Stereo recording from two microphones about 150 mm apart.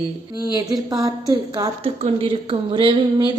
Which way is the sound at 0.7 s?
25° right (ahead or behind).